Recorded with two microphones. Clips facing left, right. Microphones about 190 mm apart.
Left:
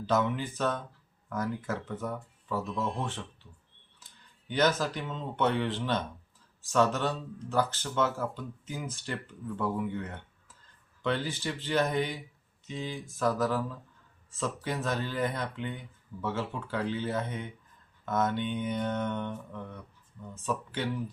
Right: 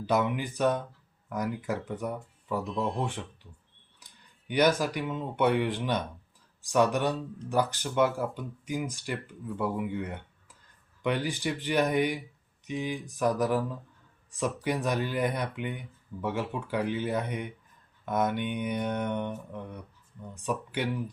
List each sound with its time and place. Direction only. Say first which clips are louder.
0.0 s speech: right 1 dB; 15° right (ahead or behind)